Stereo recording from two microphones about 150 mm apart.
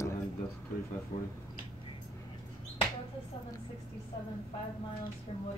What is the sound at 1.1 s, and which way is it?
Speech, 50° left (ahead or behind).